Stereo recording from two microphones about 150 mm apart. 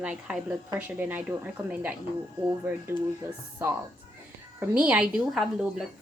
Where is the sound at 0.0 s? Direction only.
10° right (ahead or behind).